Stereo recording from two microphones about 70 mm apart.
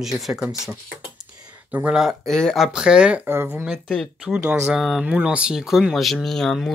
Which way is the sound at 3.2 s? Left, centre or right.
Right.